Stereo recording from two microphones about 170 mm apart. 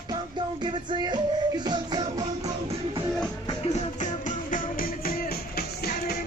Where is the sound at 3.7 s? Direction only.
45° left (ahead or behind); by 6.1 s 65° left (ahead or behind).